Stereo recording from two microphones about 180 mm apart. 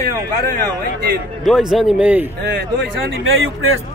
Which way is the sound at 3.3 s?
90° right.